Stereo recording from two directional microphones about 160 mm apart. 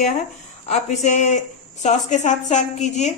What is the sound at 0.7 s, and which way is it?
A woman's voice, 45° left (ahead or behind).